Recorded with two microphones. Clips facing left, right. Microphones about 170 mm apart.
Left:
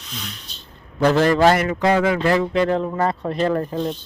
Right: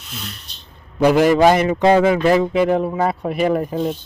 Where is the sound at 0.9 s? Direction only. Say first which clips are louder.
Right 3 dB; 15° right (ahead or behind).